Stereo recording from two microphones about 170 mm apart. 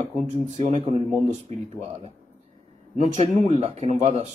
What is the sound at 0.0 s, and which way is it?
Speech, 40° right (ahead or behind).